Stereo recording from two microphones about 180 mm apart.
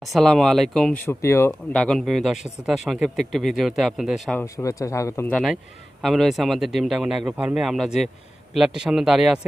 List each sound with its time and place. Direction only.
0.0 s speech: centre (ahead or behind)
4.4 s speech: 15° left (ahead or behind); by 9.4 s 5° right (ahead or behind)